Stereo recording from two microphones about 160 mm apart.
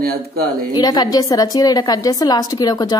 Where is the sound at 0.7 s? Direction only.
25° left (ahead or behind).